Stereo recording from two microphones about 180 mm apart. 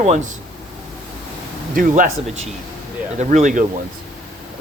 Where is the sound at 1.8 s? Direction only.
50° right (ahead or behind).